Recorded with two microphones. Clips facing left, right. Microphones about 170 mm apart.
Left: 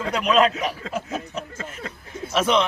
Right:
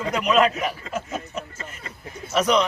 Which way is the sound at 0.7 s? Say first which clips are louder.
Left 1 dB; 10° left (ahead or behind).